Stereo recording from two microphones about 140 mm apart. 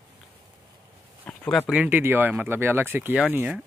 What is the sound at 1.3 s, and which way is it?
Speech, 5° left (ahead or behind).